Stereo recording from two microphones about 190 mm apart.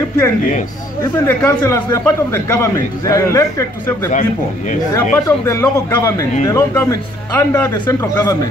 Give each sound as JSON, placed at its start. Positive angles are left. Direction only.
{"t": 1.2, "sound": "a man's voice", "side_deg": 15}
{"t": 5.1, "sound": "a man's voice", "side_deg": 15}